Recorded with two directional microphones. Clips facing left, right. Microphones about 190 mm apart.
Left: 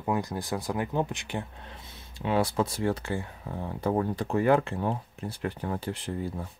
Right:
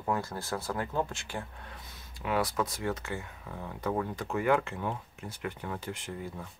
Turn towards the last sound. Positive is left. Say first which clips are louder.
# left 6 dB
turn(degrees=35)  # may be behind; listen again after turning